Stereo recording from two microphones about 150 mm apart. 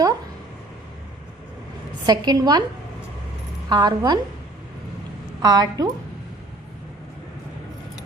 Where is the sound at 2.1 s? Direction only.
25° right (ahead or behind).